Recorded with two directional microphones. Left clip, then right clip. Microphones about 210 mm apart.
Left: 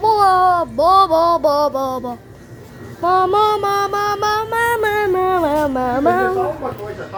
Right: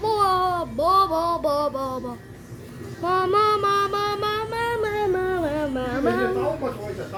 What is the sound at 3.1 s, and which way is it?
Music, 15° left (ahead or behind).